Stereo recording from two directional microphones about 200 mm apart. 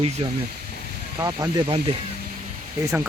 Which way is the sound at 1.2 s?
15° right (ahead or behind).